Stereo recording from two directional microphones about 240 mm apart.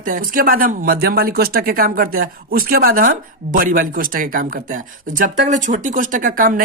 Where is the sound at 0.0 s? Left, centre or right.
Right.